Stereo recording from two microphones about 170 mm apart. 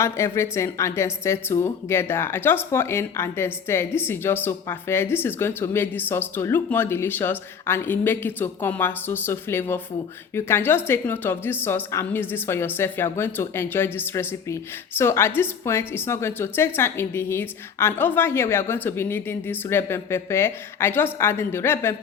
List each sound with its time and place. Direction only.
0.0 s speech: 15° left (ahead or behind)